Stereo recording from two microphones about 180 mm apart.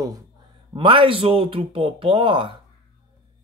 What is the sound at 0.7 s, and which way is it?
Speech, 30° right (ahead or behind).